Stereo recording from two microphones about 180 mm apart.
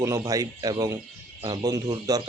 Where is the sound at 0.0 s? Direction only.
20° right (ahead or behind).